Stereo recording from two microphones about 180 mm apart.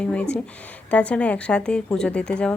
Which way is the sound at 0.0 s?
5° left (ahead or behind).